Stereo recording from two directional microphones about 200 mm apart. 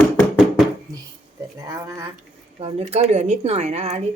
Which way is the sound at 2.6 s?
30° right (ahead or behind).